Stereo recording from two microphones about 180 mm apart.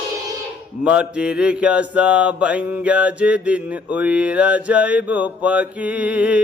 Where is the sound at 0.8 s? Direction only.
5° right (ahead or behind).